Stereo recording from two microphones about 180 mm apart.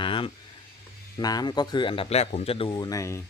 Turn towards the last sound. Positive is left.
turn(degrees=20)  # may be behind; listen again after turning